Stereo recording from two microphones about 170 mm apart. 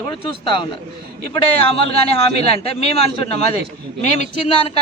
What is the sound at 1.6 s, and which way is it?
A man's voice, 35° left (ahead or behind).